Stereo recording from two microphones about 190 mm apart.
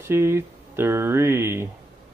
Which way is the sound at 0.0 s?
15° right (ahead or behind).